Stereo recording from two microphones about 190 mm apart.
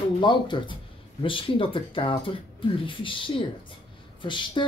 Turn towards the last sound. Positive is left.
turn(degrees=25)  # may be behind; listen again after turning